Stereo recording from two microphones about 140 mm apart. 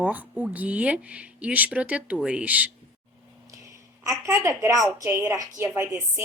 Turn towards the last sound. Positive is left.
turn(degrees=-20)  # may be behind; listen again after turning